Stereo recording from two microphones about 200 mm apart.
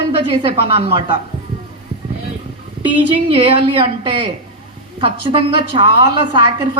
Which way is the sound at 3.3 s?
25° right (ahead or behind).